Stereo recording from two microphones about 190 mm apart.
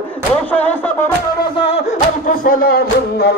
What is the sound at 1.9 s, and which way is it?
Speech, 45° left (ahead or behind).